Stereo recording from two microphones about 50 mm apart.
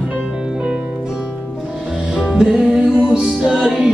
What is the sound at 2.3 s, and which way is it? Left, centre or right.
Music, centre.